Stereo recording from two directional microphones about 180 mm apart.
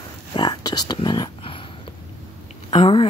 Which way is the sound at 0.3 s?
25° left (ahead or behind).